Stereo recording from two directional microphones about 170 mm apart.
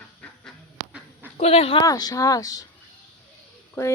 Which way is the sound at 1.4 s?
35° left (ahead or behind).